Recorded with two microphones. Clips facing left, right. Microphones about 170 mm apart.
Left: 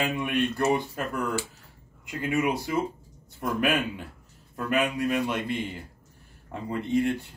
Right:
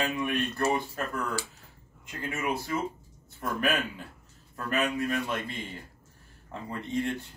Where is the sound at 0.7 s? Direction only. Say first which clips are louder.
Left 3 dB; 15° left (ahead or behind).